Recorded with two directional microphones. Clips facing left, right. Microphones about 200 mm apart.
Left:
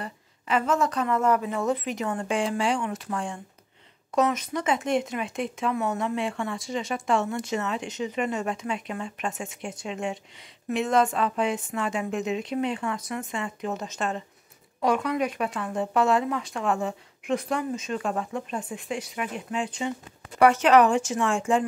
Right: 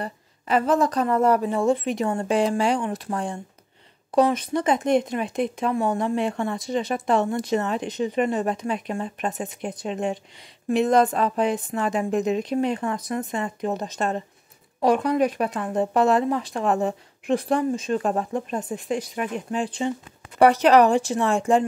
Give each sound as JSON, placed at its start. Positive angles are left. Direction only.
{"t": 0.0, "sound": "speech", "side_deg": -40}